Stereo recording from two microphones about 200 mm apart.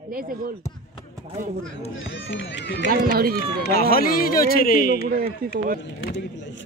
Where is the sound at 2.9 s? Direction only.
50° right (ahead or behind).